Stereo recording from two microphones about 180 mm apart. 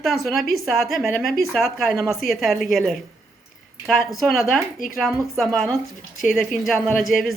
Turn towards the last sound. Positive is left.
turn(degrees=0)  # may be behind; listen again after turning